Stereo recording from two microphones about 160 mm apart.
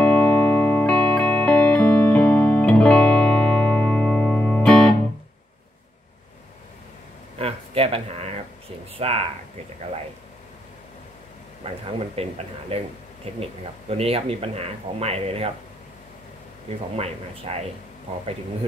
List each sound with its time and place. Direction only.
0.0 s music: 10° left (ahead or behind)
7.3 s a sound: 35° right (ahead or behind)
8.9 s speech: 40° right (ahead or behind)
11.6 s speech: 35° right (ahead or behind)
16.9 s speech: 40° right (ahead or behind)